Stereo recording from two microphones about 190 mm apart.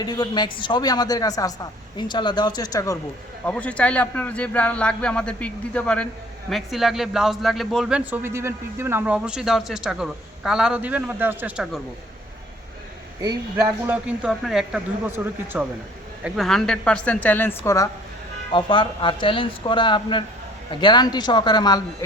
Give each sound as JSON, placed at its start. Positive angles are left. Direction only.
{"t": 0.0, "sound": "speech", "side_deg": 20}
{"t": 3.4, "sound": "a man's voice", "side_deg": 5}
{"t": 13.2, "sound": "a man's voice", "side_deg": -15}
{"t": 16.2, "sound": "a man's voice", "side_deg": 0}
{"t": 18.5, "sound": "speech", "side_deg": 25}